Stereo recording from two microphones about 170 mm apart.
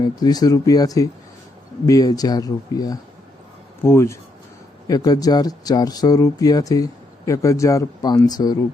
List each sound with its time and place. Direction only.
0.0 s speech: 25° left (ahead or behind)